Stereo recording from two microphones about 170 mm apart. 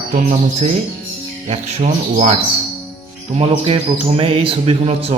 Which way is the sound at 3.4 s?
35° right (ahead or behind).